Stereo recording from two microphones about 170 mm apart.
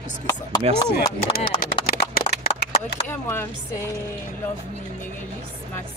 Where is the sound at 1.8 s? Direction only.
65° left (ahead or behind).